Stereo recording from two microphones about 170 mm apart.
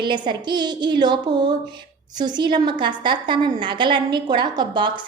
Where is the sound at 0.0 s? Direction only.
25° right (ahead or behind).